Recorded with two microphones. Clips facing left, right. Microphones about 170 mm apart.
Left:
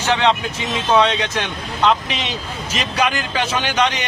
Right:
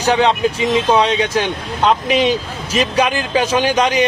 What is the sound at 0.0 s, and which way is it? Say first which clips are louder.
Speech: right 3 dB; 35° right (ahead or behind).